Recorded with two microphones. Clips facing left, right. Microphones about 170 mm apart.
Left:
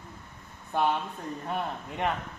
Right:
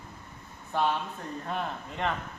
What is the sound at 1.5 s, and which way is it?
Speech, 15° left (ahead or behind).